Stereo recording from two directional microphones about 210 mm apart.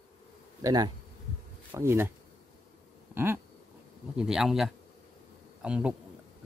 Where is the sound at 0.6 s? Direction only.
20° right (ahead or behind).